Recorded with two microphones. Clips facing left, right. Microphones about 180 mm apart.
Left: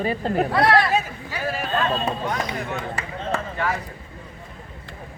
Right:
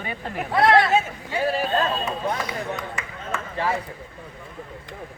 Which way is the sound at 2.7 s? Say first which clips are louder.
Left 3 dB; 30° left (ahead or behind).